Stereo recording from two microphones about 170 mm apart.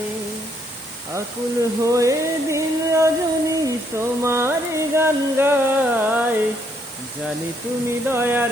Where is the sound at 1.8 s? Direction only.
20° right (ahead or behind).